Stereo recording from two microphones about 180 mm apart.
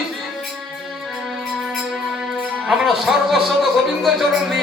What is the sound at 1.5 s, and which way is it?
Music, centre (ahead or behind).